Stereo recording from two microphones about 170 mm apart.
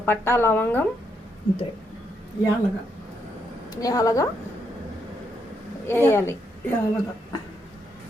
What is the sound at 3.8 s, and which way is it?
Speech, 20° left (ahead or behind).